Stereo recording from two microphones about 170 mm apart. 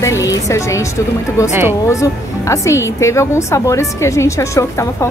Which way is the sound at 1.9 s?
20° left (ahead or behind).